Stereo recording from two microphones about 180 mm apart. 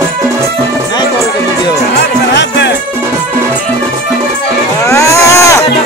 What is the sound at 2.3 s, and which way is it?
Music, 75° left (ahead or behind).